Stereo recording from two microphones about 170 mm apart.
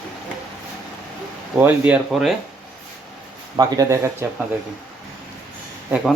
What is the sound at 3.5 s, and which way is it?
Speech, 20° right (ahead or behind).